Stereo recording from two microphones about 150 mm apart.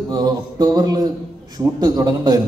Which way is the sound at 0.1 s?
25° right (ahead or behind).